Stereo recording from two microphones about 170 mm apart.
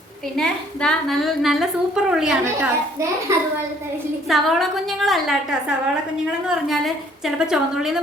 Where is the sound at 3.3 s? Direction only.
15° right (ahead or behind).